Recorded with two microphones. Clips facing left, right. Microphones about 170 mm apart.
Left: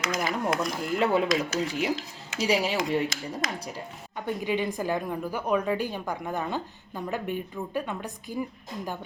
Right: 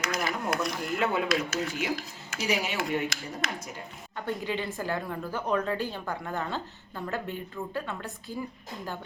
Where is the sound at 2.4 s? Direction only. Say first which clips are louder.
Left 4 dB; 30° left (ahead or behind).